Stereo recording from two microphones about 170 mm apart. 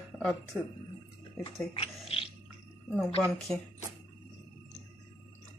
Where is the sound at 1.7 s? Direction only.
35° left (ahead or behind).